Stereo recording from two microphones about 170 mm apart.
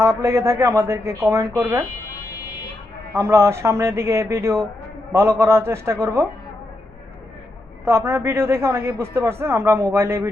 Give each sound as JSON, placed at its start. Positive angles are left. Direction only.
{"t": 0.0, "sound": "a man's voice", "side_deg": -15}
{"t": 3.2, "sound": "a man's voice", "side_deg": -15}
{"t": 7.9, "sound": "a man's voice", "side_deg": -15}